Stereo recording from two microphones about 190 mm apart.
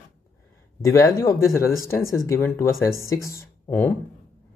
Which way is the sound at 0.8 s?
15° left (ahead or behind).